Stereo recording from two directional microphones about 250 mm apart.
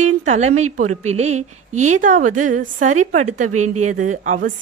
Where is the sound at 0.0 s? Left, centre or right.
Right.